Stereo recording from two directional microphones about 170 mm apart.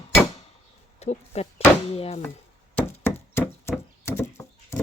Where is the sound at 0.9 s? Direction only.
40° left (ahead or behind).